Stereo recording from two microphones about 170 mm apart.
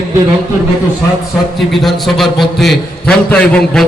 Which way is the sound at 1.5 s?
Centre (ahead or behind).